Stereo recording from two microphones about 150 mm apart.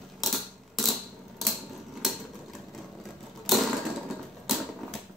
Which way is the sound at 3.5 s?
Centre (ahead or behind).